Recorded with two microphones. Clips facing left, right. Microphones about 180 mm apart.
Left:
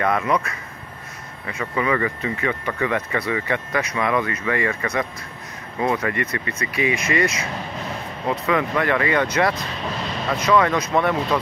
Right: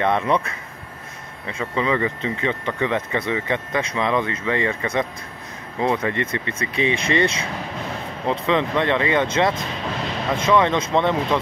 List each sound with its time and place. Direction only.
0.0 s speech: 25° right (ahead or behind)